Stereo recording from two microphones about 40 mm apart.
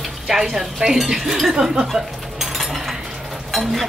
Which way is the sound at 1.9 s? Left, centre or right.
Centre.